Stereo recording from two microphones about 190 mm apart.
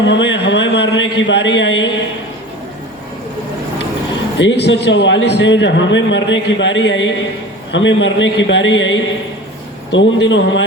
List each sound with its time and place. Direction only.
0.0 s a man's voice: 70° left (ahead or behind)
4.4 s a man's voice: 65° left (ahead or behind)